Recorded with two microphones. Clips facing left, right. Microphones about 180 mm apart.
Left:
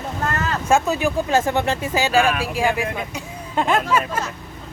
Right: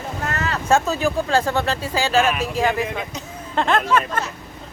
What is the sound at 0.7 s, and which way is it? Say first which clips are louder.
Speech: even; 15° left (ahead or behind).